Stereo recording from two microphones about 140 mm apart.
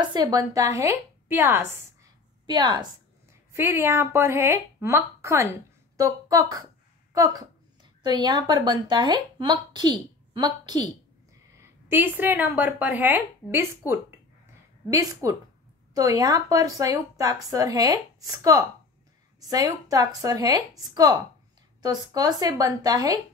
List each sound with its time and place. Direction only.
0.0 s a woman's voice: 30° right (ahead or behind)
2.4 s a woman's voice: 30° right (ahead or behind)
3.5 s a woman's voice: 15° right (ahead or behind)
11.5 s a sound: 15° right (ahead or behind)
12.5 s a woman's voice: 10° right (ahead or behind)
15.2 s speech: 20° right (ahead or behind)